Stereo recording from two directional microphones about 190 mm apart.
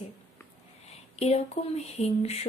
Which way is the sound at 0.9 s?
35° left (ahead or behind).